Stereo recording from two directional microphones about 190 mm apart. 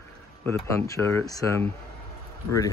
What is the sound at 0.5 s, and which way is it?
Speech, 15° left (ahead or behind).